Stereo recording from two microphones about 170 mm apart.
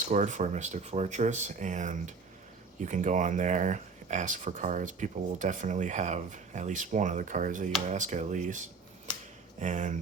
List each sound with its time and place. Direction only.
0.1 s speech: 45° right (ahead or behind)